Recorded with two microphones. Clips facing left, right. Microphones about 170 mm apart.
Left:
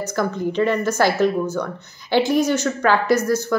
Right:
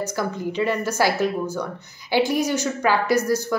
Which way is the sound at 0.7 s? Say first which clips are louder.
Left 1 dB; 10° right (ahead or behind).